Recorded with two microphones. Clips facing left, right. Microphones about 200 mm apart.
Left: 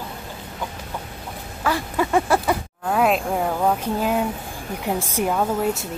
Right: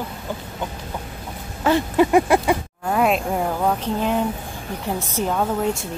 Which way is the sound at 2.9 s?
Centre (ahead or behind).